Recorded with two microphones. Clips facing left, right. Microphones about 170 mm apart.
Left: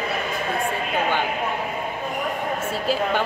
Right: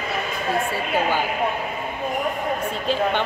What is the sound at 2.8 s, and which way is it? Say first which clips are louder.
Speech: even; 5° left (ahead or behind).